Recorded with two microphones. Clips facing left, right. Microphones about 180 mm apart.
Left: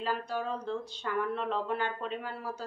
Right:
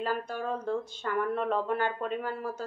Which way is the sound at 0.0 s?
50° right (ahead or behind).